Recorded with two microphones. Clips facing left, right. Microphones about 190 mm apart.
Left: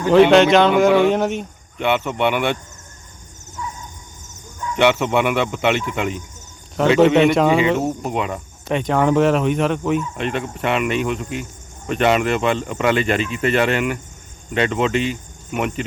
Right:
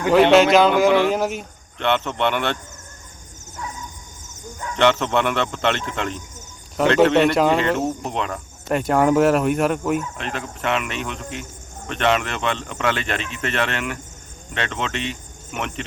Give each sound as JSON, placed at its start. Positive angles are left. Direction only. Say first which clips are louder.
{"t": 0.1, "sound": "speech", "louder": "left 2 dB", "side_deg": 0}
{"t": 1.8, "sound": "speech", "louder": "left 2 dB", "side_deg": 10}
{"t": 4.8, "sound": "speech", "louder": "left 2 dB", "side_deg": 10}
{"t": 8.7, "sound": "speech", "louder": "even", "side_deg": -5}